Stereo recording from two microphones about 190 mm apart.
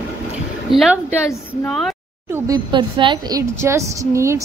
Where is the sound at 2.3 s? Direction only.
20° right (ahead or behind).